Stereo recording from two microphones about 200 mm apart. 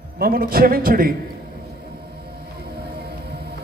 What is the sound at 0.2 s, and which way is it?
Speech, 50° right (ahead or behind).